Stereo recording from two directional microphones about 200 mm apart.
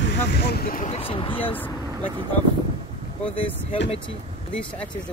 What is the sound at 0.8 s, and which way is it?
Speech, 30° left (ahead or behind).